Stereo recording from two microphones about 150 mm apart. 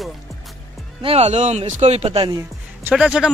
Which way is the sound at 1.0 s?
45° right (ahead or behind).